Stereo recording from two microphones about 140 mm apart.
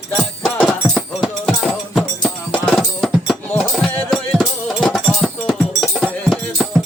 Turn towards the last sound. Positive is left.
turn(degrees=0)  # may be behind; listen again after turning